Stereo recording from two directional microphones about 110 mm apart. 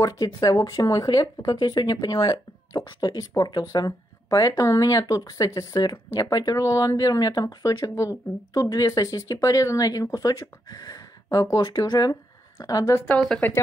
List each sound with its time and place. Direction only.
0.0 s speech: 35° left (ahead or behind)
13.0 s speech: 5° left (ahead or behind)